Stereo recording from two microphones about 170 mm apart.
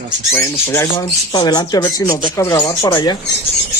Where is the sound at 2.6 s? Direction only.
25° left (ahead or behind).